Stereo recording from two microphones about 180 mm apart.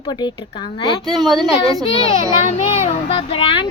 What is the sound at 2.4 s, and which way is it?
Speech, 40° left (ahead or behind).